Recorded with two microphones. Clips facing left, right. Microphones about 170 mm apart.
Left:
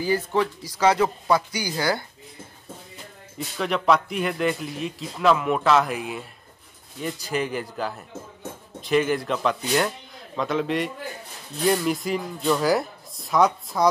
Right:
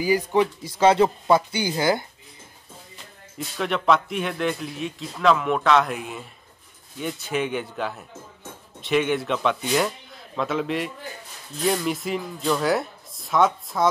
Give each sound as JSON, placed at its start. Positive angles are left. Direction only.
{"t": 0.0, "sound": "speech", "side_deg": -15}
{"t": 3.3, "sound": "speech", "side_deg": 0}